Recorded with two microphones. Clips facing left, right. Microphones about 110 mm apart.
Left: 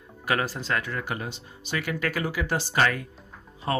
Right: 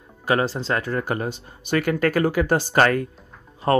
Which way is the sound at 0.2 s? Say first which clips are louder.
Right 6 dB; 30° right (ahead or behind).